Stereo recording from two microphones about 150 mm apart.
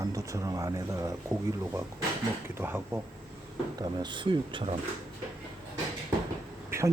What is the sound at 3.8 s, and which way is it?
Speech, 30° right (ahead or behind).